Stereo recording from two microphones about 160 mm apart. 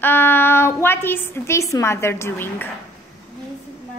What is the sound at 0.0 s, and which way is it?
A woman's voice, 15° left (ahead or behind).